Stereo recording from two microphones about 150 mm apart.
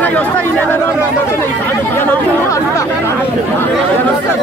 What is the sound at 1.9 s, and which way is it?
Chatter, 15° left (ahead or behind).